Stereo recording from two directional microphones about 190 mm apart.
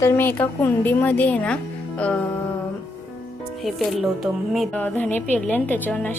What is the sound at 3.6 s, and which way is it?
Speech, centre (ahead or behind).